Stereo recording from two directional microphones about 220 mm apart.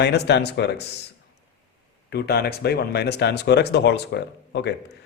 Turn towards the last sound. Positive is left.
turn(degrees=50)  # may be behind; listen again after turning